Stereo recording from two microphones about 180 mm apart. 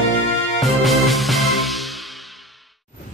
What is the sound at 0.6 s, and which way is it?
Music, centre (ahead or behind).